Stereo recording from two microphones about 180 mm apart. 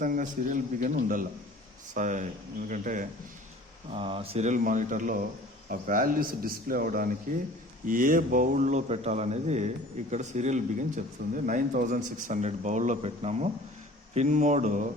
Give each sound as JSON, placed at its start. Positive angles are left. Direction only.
{"t": 0.0, "sound": "speech", "side_deg": -50}
{"t": 3.9, "sound": "a man's voice", "side_deg": -30}